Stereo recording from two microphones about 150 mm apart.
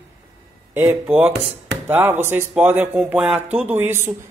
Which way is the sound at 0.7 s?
15° right (ahead or behind).